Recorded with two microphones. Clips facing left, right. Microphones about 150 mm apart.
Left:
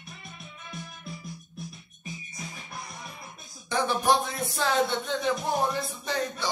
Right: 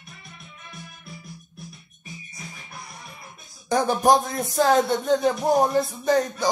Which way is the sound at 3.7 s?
45° right (ahead or behind).